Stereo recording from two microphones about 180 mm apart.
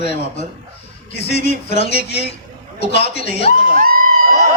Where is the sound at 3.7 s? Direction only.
55° right (ahead or behind).